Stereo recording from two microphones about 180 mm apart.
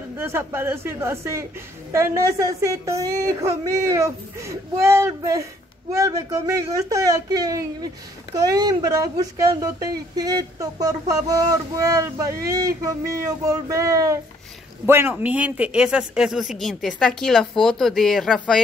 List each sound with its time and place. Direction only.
0.2 s a woman's voice: 15° right (ahead or behind)